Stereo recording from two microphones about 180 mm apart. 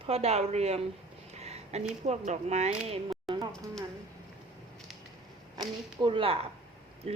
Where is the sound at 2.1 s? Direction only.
40° right (ahead or behind).